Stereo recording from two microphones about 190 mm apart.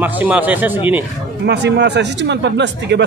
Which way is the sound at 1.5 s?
65° right (ahead or behind).